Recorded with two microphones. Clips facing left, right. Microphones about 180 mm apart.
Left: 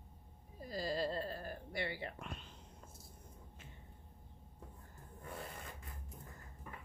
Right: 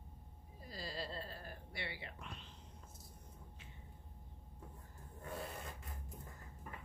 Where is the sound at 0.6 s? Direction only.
45° left (ahead or behind).